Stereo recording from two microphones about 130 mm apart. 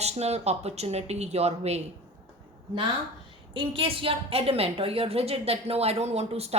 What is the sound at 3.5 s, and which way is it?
A woman's voice, 40° right (ahead or behind).